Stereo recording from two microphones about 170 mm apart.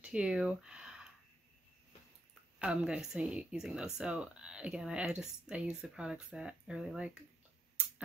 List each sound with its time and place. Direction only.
0.0 s speech: 5° right (ahead or behind)
2.6 s speech: 5° right (ahead or behind)